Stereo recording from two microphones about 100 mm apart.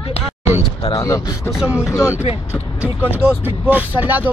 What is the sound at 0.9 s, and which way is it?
Speech, 35° left (ahead or behind).